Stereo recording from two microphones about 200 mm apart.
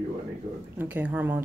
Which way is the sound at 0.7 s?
10° right (ahead or behind).